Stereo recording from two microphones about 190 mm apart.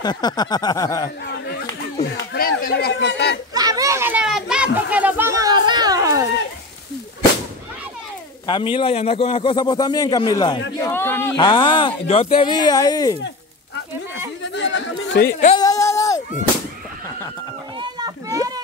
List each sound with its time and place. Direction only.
0.0 s a man's voice: 20° left (ahead or behind)
1.2 s a sound: 60° left (ahead or behind)
3.5 s children playing: 20° right (ahead or behind)
8.5 s a man's voice: 25° left (ahead or behind)
10.8 s a sound: 10° left (ahead or behind)
11.3 s a man's voice: 25° left (ahead or behind)
14.4 s chatter: 70° left (ahead or behind)
15.5 s a sound: 20° left (ahead or behind)
17.7 s children playing: 20° right (ahead or behind)